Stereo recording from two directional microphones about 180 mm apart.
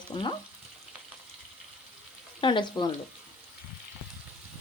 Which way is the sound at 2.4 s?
25° left (ahead or behind).